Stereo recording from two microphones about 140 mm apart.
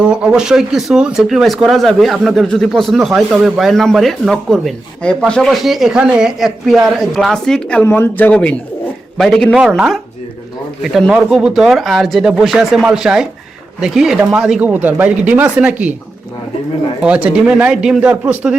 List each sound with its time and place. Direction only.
0.0 s speech: 5° right (ahead or behind)
17.0 s speech: 10° right (ahead or behind)